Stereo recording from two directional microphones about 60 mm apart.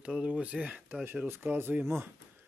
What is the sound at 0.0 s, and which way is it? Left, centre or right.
Speech, centre.